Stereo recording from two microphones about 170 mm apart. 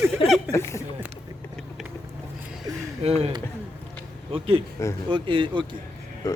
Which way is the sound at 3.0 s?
35° right (ahead or behind).